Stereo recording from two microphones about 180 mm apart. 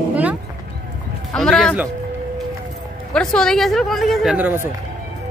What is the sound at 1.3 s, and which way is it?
Speech, 5° left (ahead or behind).